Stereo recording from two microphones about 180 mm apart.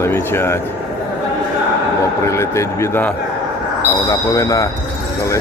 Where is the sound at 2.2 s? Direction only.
15° left (ahead or behind).